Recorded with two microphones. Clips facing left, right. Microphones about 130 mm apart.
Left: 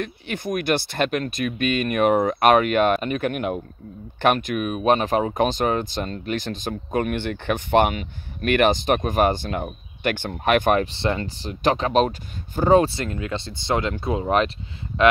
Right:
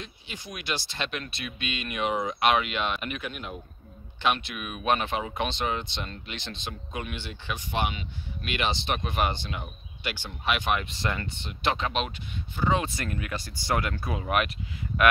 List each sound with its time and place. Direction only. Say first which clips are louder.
0.0 s speech: left 13 dB; 55° left (ahead or behind)
4.2 s speech: left 8 dB; 45° left (ahead or behind)
10.9 s speech: left 7 dB; 30° left (ahead or behind)
12.9 s speech: left 5 dB; 25° left (ahead or behind)